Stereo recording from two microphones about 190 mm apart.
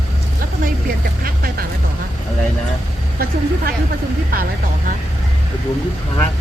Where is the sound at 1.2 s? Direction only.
50° right (ahead or behind).